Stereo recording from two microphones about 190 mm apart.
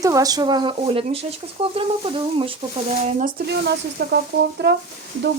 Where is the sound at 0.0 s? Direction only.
20° right (ahead or behind); by 4.8 s 60° right (ahead or behind).